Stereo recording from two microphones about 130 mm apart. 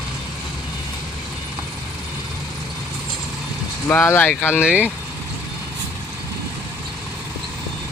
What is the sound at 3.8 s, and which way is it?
Speech, 20° left (ahead or behind).